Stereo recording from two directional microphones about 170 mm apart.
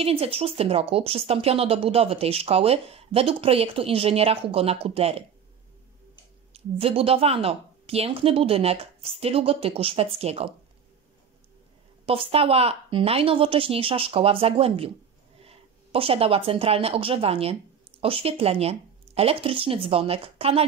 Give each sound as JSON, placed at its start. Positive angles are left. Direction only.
{"t": 0.0, "sound": "speech", "side_deg": -35}
{"t": 6.5, "sound": "speech", "side_deg": -35}
{"t": 12.1, "sound": "speech", "side_deg": -35}